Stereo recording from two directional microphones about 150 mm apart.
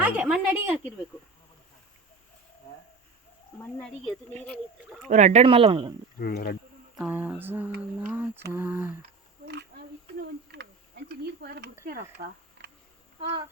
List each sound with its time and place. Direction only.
0.0 s a woman's voice: 5° right (ahead or behind)
3.6 s speech: 10° left (ahead or behind)
5.0 s speech: 50° right (ahead or behind)
6.1 s speech: 90° left
6.9 s a woman's voice: 10° right (ahead or behind)
10.9 s insect: 90° right
11.9 s speech: 85° right
13.1 s a child's voice: 40° right (ahead or behind)